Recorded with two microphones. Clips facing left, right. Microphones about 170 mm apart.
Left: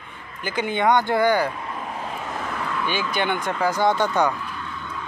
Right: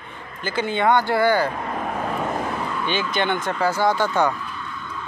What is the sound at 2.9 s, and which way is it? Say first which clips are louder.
Speech: right 2 dB; 10° left (ahead or behind).